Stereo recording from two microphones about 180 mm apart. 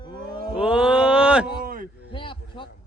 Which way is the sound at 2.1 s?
30° left (ahead or behind).